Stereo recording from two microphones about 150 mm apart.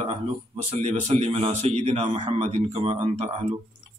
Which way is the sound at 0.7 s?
50° right (ahead or behind).